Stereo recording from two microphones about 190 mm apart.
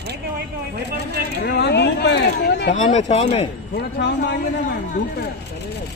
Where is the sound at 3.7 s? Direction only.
60° left (ahead or behind).